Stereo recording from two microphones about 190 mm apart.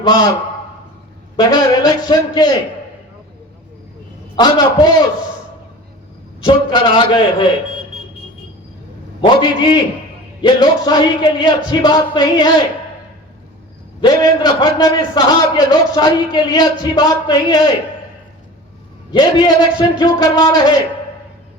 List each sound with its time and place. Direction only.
0.0 s a man's voice: 20° left (ahead or behind)
1.4 s a man's voice: 20° left (ahead or behind)
4.4 s a man's voice: 20° left (ahead or behind)
6.4 s a man's voice: 25° left (ahead or behind)
9.2 s a man's voice: 25° left (ahead or behind)
14.0 s a man's voice: 20° left (ahead or behind)
19.1 s a man's voice: 20° left (ahead or behind)